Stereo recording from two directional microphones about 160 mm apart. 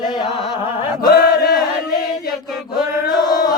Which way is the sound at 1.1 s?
80° left.